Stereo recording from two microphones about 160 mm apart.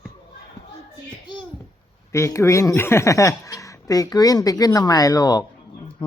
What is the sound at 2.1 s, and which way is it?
Speech, 20° left (ahead or behind).